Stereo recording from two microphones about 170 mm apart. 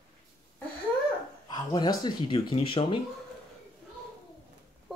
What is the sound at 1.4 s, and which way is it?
Speech, 25° left (ahead or behind).